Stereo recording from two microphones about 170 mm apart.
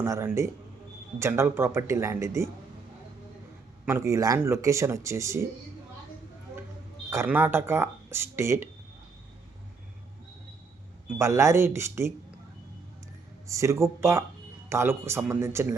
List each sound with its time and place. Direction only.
0.0 s speech: 15° right (ahead or behind)
3.8 s speech: 15° right (ahead or behind)
7.1 s speech: 15° right (ahead or behind)
11.2 s speech: 15° right (ahead or behind)
13.5 s speech: 15° right (ahead or behind)